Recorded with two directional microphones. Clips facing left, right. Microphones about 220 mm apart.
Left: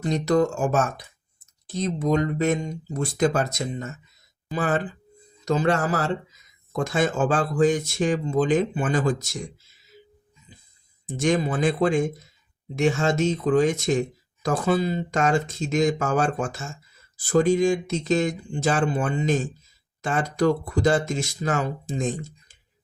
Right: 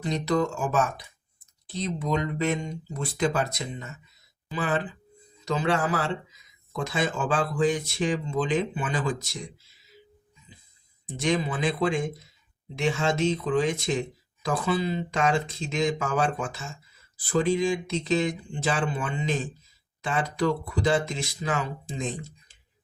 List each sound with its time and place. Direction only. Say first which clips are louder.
0.0 s speech: left 4 dB; 45° left (ahead or behind)
11.2 s speech: left 4 dB; 45° left (ahead or behind)